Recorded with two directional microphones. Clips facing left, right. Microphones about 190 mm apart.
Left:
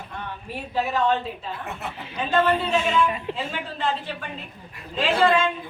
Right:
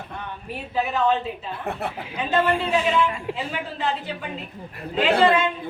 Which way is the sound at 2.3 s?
10° right (ahead or behind).